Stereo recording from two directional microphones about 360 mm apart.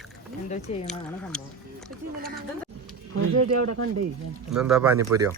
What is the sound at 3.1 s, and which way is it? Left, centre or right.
Speech, right.